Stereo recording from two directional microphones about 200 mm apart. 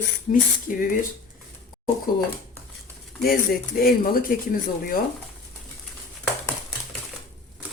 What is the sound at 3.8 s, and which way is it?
Speech, 45° left (ahead or behind).